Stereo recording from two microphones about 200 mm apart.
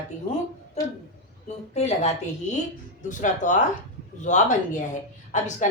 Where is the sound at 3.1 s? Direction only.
40° left (ahead or behind).